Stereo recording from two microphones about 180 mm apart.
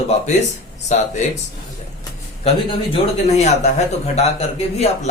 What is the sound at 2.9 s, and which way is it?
Speech, 40° left (ahead or behind).